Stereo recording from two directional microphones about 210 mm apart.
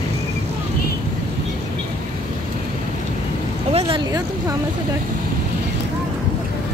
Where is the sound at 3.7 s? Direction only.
25° right (ahead or behind).